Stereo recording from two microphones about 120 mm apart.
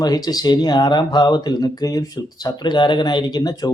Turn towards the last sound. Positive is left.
turn(degrees=35)  # may be behind; listen again after turning